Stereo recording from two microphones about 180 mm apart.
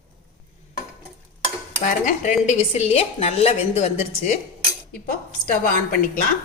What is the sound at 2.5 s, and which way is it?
A woman's voice, 35° left (ahead or behind).